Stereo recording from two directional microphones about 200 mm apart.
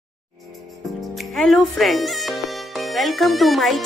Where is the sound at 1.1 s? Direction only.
Centre (ahead or behind).